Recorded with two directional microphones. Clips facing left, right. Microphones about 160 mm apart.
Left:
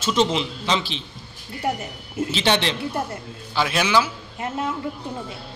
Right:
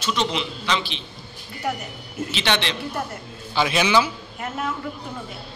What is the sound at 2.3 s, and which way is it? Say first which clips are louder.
Speech: left 3 dB; 35° left (ahead or behind).